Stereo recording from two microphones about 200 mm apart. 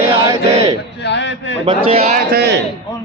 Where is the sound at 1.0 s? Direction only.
60° left (ahead or behind).